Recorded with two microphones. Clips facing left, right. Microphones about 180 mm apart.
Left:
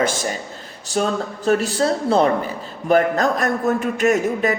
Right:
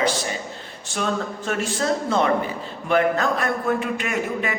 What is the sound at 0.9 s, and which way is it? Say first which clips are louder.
A man's voice: left 4 dB; 35° left (ahead or behind).